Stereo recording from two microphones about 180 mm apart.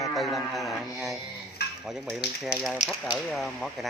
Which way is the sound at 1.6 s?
65° left (ahead or behind).